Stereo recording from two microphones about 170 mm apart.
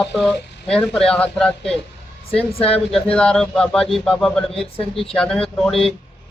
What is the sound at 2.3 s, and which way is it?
Speech, 35° left (ahead or behind).